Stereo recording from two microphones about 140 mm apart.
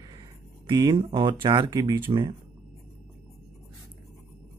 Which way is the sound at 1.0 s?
35° right (ahead or behind).